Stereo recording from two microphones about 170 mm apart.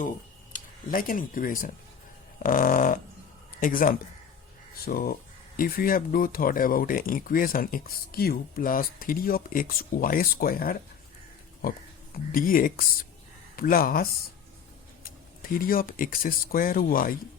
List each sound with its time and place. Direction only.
0.5 s speech: 55° left (ahead or behind)
2.4 s dog: 55° left (ahead or behind)
3.6 s speech: 55° left (ahead or behind)
12.1 s speech: 55° left (ahead or behind)